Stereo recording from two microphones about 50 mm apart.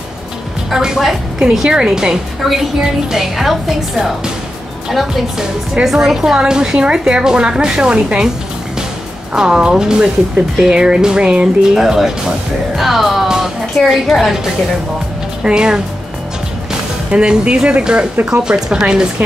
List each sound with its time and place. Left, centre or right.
0.7 s a woman's voice: centre
9.3 s a woman's voice: centre
12.7 s music: centre
13.7 s a woman's voice: centre
15.4 s a woman's voice: centre
17.1 s a woman's voice: right